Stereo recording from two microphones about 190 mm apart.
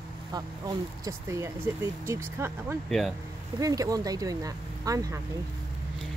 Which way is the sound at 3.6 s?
20° right (ahead or behind).